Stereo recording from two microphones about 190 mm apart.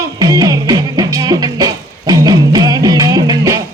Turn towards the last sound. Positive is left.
turn(degrees=-20)  # may be behind; listen again after turning